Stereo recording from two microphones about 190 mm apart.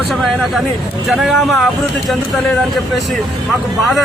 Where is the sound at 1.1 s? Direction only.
Centre (ahead or behind).